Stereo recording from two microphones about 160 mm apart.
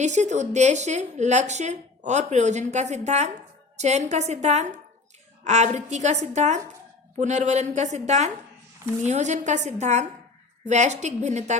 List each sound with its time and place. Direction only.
0.0 s a woman's voice: 45° right (ahead or behind)